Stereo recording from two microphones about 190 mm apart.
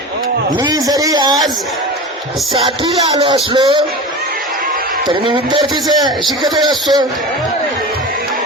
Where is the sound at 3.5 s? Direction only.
25° right (ahead or behind).